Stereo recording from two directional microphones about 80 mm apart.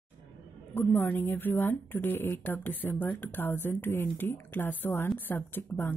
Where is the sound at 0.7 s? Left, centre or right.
Left.